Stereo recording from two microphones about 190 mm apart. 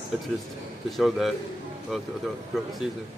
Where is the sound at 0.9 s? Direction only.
Centre (ahead or behind).